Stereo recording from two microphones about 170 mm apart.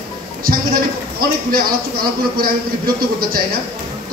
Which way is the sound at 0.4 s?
60° right (ahead or behind).